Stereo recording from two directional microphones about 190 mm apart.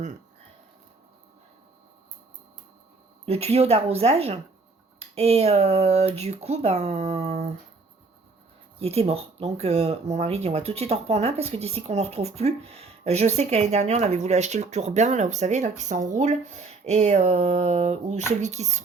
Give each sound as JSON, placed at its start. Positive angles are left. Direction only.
{"t": 3.2, "sound": "speech", "side_deg": -35}
{"t": 8.8, "sound": "speech", "side_deg": -30}